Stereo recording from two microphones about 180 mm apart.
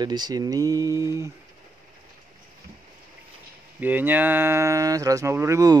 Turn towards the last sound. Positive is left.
turn(degrees=-15)  # may be behind; listen again after turning